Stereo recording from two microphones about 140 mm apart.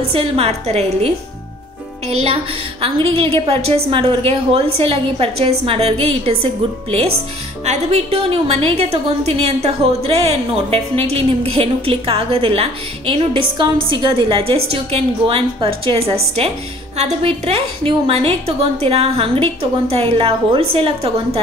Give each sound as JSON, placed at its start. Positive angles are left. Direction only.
{"t": 0.1, "sound": "a woman's voice", "side_deg": -45}